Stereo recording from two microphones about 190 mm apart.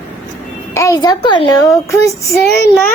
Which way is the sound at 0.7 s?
20° left (ahead or behind).